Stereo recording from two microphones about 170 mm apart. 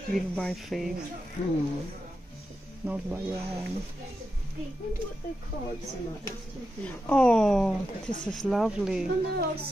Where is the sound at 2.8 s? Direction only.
10° right (ahead or behind).